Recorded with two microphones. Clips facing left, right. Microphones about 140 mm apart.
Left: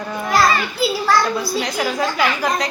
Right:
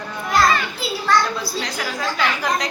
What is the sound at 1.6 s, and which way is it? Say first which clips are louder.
Speech: left 5 dB; 15° left (ahead or behind).